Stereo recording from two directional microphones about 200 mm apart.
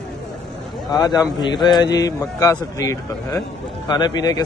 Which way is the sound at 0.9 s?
20° left (ahead or behind).